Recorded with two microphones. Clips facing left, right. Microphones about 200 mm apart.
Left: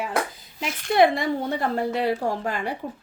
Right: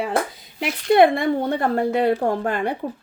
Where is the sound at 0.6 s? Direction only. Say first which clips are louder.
Right 4 dB; 55° right (ahead or behind).